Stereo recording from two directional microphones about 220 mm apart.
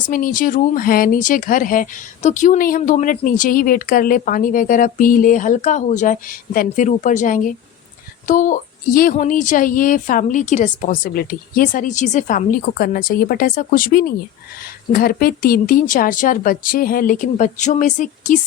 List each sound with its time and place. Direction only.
0.1 s speech: 40° left (ahead or behind)